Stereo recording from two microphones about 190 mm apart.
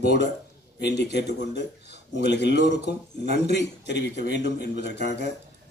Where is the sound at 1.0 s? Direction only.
65° left (ahead or behind).